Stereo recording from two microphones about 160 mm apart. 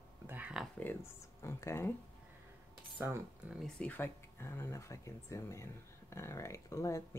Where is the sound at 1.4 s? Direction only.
15° left (ahead or behind).